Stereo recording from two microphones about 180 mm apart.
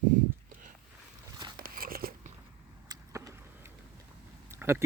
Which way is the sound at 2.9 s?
20° right (ahead or behind).